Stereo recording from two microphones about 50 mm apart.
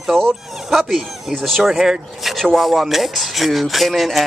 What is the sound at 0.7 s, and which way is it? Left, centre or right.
Speech, centre.